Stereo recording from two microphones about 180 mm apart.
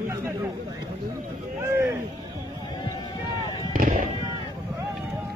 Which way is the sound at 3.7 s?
45° right (ahead or behind).